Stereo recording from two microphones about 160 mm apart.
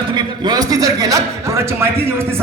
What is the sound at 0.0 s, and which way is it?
A man's voice, 30° right (ahead or behind).